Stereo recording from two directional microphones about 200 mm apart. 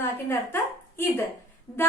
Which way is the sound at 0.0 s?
10° left (ahead or behind).